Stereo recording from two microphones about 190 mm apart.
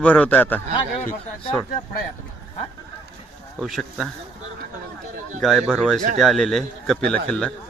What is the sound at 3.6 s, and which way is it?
Speech, centre (ahead or behind).